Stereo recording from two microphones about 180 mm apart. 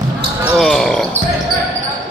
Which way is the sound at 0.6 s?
Centre (ahead or behind).